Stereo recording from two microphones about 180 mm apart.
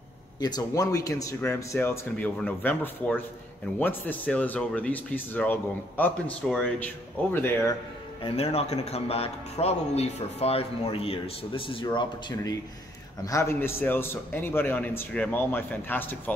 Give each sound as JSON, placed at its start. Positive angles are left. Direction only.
{"t": 0.4, "sound": "a man's voice", "side_deg": 20}
{"t": 8.2, "sound": "a man's voice", "side_deg": 35}